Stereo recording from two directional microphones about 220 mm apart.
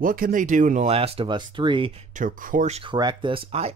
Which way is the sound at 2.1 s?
35° right (ahead or behind).